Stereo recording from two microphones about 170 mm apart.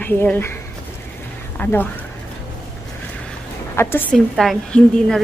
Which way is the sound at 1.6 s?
10° left (ahead or behind).